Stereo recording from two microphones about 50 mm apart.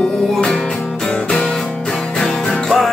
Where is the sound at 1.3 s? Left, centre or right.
Centre.